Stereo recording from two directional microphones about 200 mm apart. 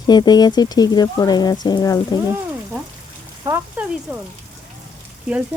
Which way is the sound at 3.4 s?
10° right (ahead or behind).